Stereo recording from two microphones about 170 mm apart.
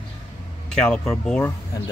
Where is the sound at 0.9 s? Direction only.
5° left (ahead or behind).